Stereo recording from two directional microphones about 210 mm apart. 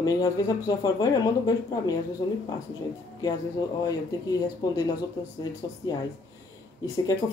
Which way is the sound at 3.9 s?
15° left (ahead or behind).